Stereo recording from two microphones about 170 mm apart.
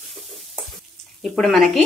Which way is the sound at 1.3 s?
Centre (ahead or behind).